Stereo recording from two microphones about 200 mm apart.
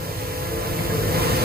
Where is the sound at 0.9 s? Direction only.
50° right (ahead or behind).